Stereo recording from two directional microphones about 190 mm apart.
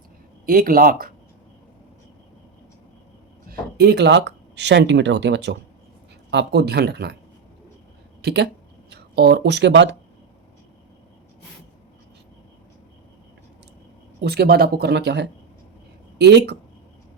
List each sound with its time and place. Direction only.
0.4 s speech: 50° right (ahead or behind)
3.5 s speech: 60° right (ahead or behind)
8.2 s speech: 60° right (ahead or behind)
14.2 s speech: 55° right (ahead or behind)